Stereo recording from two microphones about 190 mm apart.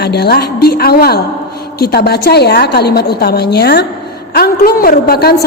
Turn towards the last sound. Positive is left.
turn(degrees=55)  # may be behind; listen again after turning